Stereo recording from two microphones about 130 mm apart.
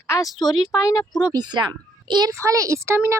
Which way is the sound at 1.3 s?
35° right (ahead or behind).